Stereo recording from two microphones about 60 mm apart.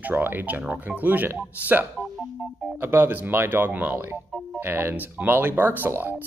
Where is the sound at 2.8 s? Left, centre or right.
Right.